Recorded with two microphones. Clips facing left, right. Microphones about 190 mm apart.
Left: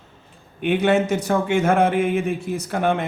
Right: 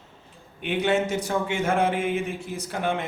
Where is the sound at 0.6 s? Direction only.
55° left (ahead or behind).